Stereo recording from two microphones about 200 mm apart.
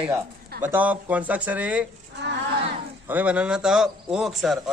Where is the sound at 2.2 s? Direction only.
65° right (ahead or behind).